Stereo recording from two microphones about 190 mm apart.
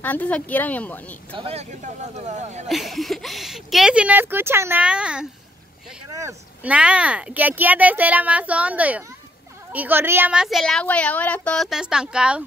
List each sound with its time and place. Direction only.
0.0 s a woman's voice: 10° left (ahead or behind)
1.3 s speech: 30° right (ahead or behind)
2.7 s a woman's voice: centre (ahead or behind)